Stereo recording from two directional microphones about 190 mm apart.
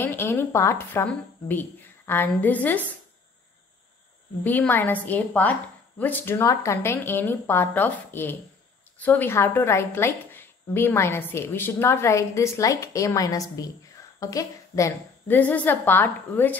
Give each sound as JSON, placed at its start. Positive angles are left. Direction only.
{"t": 0.0, "sound": "a woman's voice", "side_deg": 10}
{"t": 4.5, "sound": "a woman's voice", "side_deg": 10}